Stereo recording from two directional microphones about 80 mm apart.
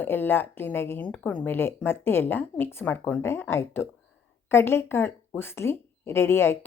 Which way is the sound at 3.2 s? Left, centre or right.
Left.